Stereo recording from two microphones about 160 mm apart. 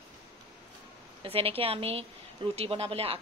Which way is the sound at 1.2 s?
35° right (ahead or behind).